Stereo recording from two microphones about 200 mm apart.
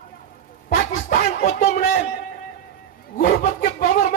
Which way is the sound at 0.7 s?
45° left (ahead or behind).